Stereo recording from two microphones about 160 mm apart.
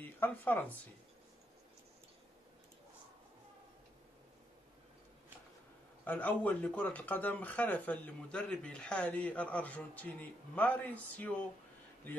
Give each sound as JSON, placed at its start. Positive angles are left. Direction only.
{"t": 0.0, "sound": "speech", "side_deg": 10}
{"t": 6.0, "sound": "speech", "side_deg": 10}